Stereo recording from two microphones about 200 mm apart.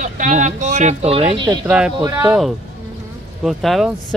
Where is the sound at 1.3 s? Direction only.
25° right (ahead or behind).